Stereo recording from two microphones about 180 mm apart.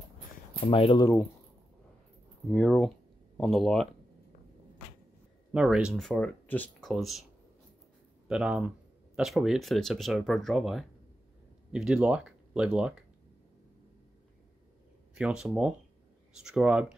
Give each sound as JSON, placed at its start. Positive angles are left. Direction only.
{"t": 0.6, "sound": "speech", "side_deg": 30}
{"t": 2.5, "sound": "speech", "side_deg": 5}
{"t": 5.5, "sound": "speech", "side_deg": -5}
{"t": 8.3, "sound": "speech", "side_deg": -5}
{"t": 15.1, "sound": "speech", "side_deg": -5}